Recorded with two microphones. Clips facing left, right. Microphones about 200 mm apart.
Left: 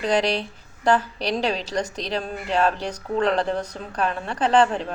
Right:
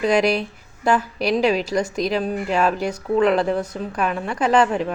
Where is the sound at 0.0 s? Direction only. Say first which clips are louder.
Right 4 dB; 10° right (ahead or behind).